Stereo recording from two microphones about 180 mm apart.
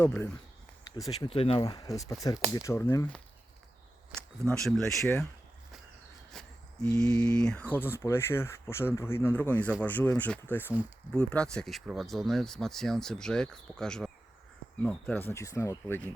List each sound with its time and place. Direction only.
0.0 s speech: 10° left (ahead or behind)
1.3 s speech: 30° left (ahead or behind); by 5.0 s 5° left (ahead or behind)
6.3 s speech: 5° left (ahead or behind)